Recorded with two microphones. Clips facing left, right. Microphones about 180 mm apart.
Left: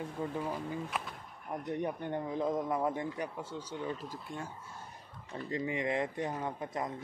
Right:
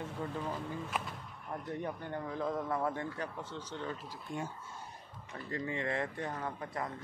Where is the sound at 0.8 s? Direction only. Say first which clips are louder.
Even; centre (ahead or behind).